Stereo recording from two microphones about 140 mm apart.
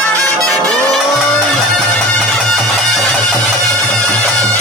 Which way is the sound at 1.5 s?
10° left (ahead or behind).